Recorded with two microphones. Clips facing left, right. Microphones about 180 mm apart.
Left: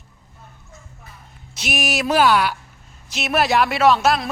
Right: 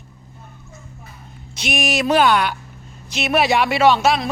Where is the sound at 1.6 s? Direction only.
5° left (ahead or behind).